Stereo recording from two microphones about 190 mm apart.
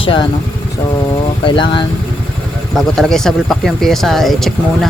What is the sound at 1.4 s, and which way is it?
Speech, 25° left (ahead or behind).